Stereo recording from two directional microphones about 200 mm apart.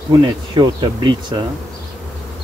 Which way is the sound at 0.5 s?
25° right (ahead or behind).